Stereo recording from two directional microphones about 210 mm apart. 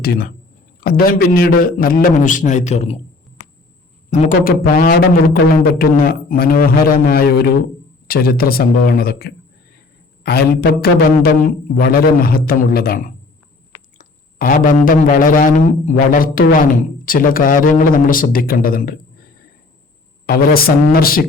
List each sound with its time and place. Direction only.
0.0 s a man's voice: 45° left (ahead or behind)
4.1 s a man's voice: 40° left (ahead or behind)
20.2 s a man's voice: 45° left (ahead or behind)